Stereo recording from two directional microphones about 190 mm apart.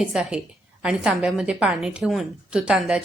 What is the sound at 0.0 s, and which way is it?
A woman's voice, 5° right (ahead or behind).